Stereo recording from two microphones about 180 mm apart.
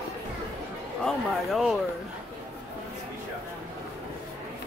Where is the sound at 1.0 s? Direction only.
Centre (ahead or behind).